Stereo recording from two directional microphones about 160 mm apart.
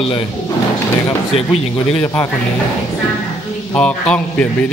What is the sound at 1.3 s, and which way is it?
Speech, 40° left (ahead or behind).